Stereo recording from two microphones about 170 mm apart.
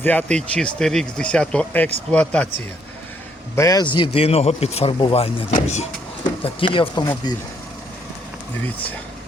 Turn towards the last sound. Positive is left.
turn(degrees=25)  # may be behind; listen again after turning